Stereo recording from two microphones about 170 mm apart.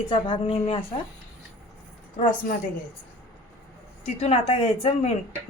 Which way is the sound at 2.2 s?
50° left (ahead or behind).